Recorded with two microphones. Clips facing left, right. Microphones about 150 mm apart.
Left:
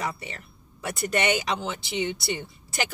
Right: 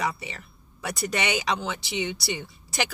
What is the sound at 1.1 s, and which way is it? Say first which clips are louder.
Speech: left 3 dB; 50° left (ahead or behind).